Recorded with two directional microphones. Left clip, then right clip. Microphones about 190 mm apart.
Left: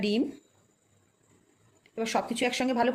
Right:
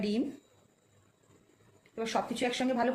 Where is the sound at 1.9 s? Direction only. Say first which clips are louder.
Left 3 dB; 50° left (ahead or behind).